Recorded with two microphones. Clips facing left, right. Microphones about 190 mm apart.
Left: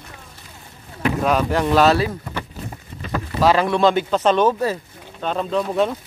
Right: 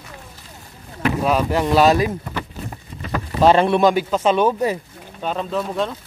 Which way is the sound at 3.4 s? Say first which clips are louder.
Right 2 dB; 25° right (ahead or behind).